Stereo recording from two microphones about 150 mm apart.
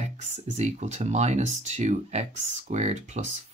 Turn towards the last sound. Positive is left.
turn(degrees=-50)  # may be behind; listen again after turning